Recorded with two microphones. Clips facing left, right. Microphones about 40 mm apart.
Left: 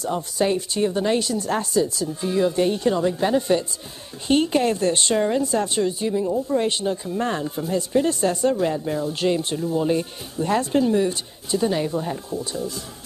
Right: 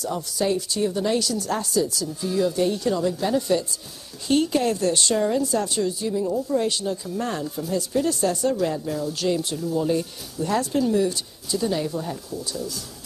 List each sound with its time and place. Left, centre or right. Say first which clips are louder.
0.0 s a woman's voice: left 3 dB; left